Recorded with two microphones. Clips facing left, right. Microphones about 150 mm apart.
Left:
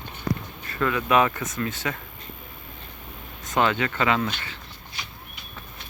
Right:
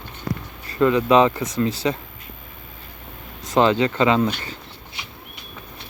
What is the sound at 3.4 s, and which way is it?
Speech, 30° right (ahead or behind).